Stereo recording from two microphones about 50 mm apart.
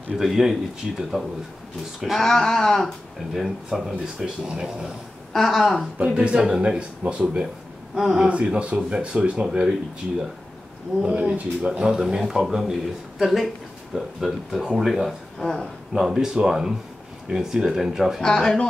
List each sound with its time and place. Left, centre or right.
0.1 s speech: centre
2.1 s speech: centre
3.3 s a man's voice: centre
5.3 s a man's voice: centre
5.9 s speech: right
8.3 s a man's voice: right; by 14.6 s centre
14.6 s speech: centre
14.9 s a man's voice: centre
15.3 s speech: centre
15.9 s speech: centre
18.2 s speech: centre